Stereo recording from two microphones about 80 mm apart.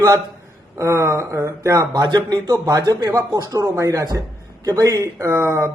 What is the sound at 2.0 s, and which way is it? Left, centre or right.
A man's voice, right.